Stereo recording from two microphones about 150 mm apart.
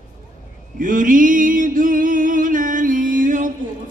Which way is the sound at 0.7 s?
65° right (ahead or behind).